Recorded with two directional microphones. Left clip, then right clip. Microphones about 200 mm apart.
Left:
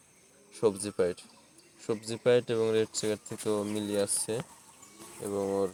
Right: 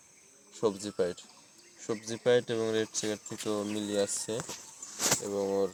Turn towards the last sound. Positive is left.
turn(degrees=20)  # may be behind; listen again after turning